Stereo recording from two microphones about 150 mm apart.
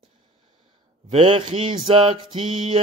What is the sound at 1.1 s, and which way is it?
Mantra, 35° right (ahead or behind).